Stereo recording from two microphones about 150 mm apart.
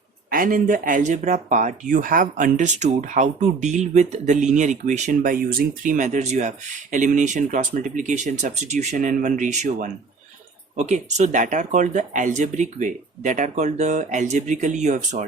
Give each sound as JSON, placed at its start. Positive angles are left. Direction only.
{"t": 0.3, "sound": "speech", "side_deg": -65}